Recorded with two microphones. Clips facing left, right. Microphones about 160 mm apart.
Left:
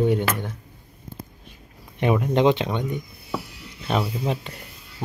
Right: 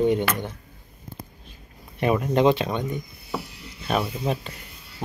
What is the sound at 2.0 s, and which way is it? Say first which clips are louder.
Speech: left 1 dB; 15° left (ahead or behind).